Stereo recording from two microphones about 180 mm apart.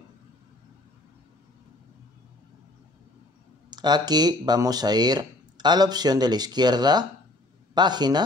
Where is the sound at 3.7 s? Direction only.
25° right (ahead or behind).